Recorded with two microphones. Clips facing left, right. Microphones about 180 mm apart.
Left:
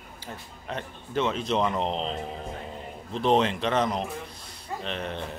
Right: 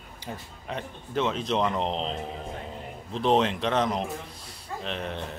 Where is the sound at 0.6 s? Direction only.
Centre (ahead or behind).